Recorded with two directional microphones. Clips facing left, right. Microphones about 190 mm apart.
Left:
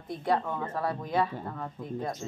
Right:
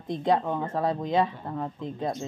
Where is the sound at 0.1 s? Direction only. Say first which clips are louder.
Right 4 dB; 20° right (ahead or behind).